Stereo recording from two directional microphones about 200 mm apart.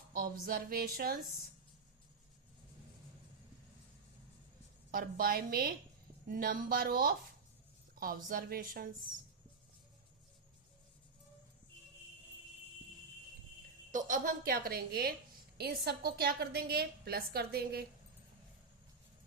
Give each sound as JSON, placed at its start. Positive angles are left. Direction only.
{"t": 0.4, "sound": "a woman's voice", "side_deg": -45}
{"t": 4.9, "sound": "a woman's voice", "side_deg": -45}
{"t": 13.9, "sound": "a woman's voice", "side_deg": -40}